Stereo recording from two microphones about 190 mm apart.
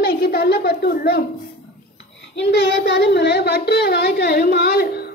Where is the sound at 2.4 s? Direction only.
65° left (ahead or behind).